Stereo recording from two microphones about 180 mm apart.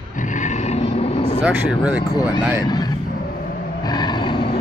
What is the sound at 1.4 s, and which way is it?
Speech, 5° right (ahead or behind).